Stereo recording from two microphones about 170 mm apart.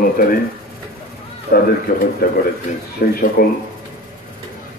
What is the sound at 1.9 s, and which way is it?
Speech, 55° left (ahead or behind).